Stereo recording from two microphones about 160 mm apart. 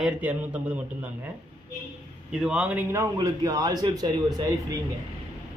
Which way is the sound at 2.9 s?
20° right (ahead or behind).